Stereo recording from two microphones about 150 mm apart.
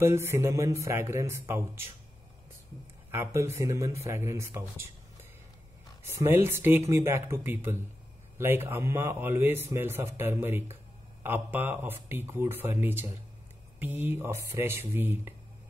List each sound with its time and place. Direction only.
0.0 s speech: 15° right (ahead or behind)
3.1 s speech: 20° right (ahead or behind)
6.0 s speech: 15° right (ahead or behind)